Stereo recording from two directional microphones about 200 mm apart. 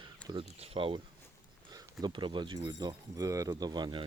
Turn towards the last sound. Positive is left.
turn(degrees=-20)  # may be behind; listen again after turning